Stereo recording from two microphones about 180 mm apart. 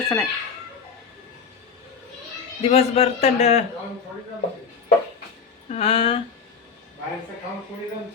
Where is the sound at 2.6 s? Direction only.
35° left (ahead or behind).